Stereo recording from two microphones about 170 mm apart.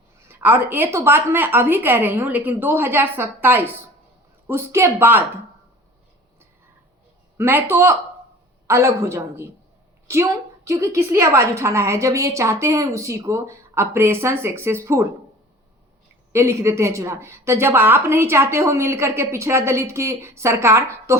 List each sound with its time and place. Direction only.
0.3 s a woman's voice: 10° right (ahead or behind)
7.3 s a woman's voice: 15° right (ahead or behind)
16.3 s a woman's voice: 15° right (ahead or behind)